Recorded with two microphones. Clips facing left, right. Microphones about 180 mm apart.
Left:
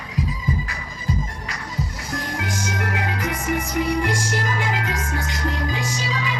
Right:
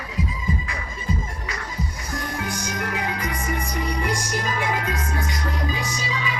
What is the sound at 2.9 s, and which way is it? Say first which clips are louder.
Music: left 2 dB; 75° left (ahead or behind).